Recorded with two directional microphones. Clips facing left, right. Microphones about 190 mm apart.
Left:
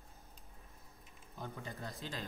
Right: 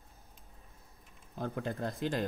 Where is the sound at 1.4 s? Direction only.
60° right (ahead or behind).